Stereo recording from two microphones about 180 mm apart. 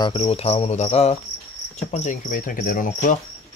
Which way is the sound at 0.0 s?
35° left (ahead or behind).